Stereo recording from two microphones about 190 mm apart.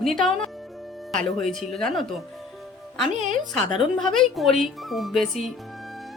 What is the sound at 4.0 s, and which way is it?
A woman's voice, centre (ahead or behind).